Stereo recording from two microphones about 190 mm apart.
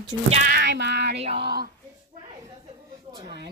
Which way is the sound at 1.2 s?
35° right (ahead or behind).